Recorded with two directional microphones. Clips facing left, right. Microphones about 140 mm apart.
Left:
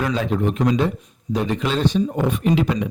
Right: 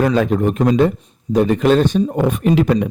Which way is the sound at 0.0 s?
50° right (ahead or behind).